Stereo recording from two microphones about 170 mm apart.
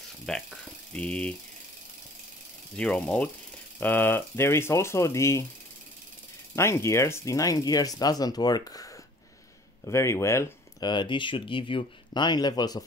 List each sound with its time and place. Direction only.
0.3 s speech: 5° left (ahead or behind)
2.7 s speech: 5° left (ahead or behind)
6.5 s speech: 15° left (ahead or behind)